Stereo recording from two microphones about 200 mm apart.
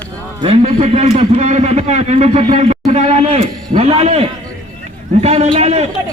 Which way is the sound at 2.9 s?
35° right (ahead or behind).